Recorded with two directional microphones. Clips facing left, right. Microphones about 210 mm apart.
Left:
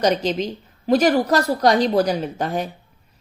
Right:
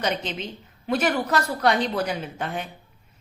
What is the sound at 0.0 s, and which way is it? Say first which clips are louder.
A woman's voice: left 8 dB; 40° left (ahead or behind).